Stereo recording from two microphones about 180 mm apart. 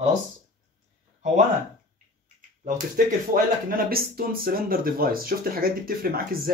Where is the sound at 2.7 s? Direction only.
50° right (ahead or behind).